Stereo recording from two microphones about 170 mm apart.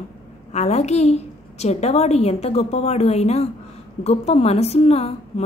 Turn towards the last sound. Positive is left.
turn(degrees=40)  # may be behind; listen again after turning